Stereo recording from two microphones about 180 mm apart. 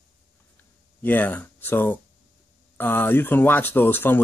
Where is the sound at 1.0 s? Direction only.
10° left (ahead or behind).